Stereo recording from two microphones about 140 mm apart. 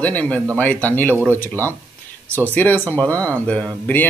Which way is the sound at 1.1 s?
15° right (ahead or behind).